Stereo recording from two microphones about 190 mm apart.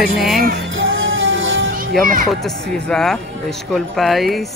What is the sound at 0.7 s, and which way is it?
Music, 90° right.